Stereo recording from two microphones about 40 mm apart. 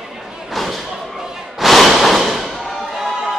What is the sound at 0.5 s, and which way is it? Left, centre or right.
Slam, centre.